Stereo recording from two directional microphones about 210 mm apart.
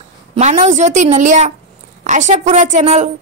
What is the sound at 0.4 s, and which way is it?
A woman's voice, 35° right (ahead or behind).